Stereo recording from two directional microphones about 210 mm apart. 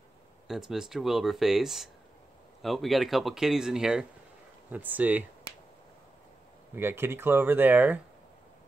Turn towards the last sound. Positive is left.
turn(degrees=-10)  # may be behind; listen again after turning